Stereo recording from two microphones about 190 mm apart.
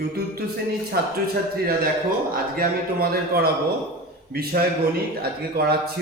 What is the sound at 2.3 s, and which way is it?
A man's voice, 50° right (ahead or behind).